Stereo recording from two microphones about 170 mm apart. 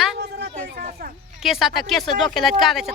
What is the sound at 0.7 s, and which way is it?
Speech, 60° right (ahead or behind).